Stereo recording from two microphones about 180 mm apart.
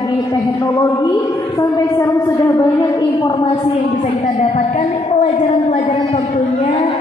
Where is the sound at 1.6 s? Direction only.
15° left (ahead or behind).